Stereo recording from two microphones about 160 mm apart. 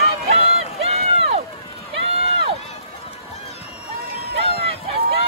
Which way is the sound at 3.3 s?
40° left (ahead or behind).